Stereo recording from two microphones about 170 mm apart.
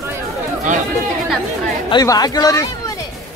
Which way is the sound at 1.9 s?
25° left (ahead or behind).